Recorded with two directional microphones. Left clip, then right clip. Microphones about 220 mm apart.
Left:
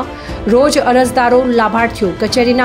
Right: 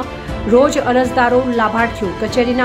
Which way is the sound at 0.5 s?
10° left (ahead or behind).